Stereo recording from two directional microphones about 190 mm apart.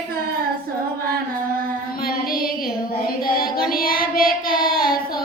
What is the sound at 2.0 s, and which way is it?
Child singing, 50° left (ahead or behind).